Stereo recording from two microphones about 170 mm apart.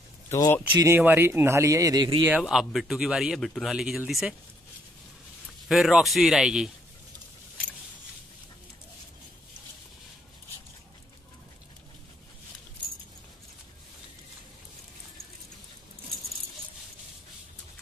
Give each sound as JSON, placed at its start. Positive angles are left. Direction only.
{"t": 0.3, "sound": "speech", "side_deg": 15}
{"t": 0.7, "sound": "speech", "side_deg": -15}
{"t": 2.2, "sound": "speech", "side_deg": -5}
{"t": 5.7, "sound": "speech", "side_deg": 0}